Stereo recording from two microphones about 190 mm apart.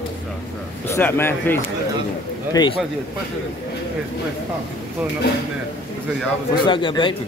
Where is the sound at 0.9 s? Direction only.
10° left (ahead or behind).